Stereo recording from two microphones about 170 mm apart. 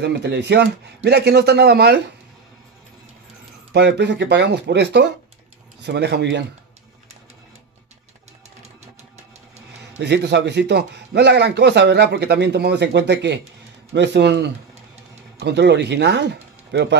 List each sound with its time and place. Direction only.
0.0 s speech: 90° right; by 2.0 s 75° right (ahead or behind)
3.7 s speech: 85° right
9.9 s a man's voice: 90° right